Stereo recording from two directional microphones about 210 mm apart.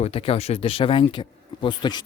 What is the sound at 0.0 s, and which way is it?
Speech, 30° left (ahead or behind).